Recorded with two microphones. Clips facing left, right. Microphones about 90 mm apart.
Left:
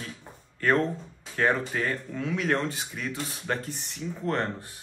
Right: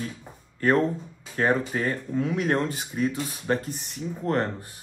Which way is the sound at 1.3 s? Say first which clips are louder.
Right 2 dB; 25° right (ahead or behind).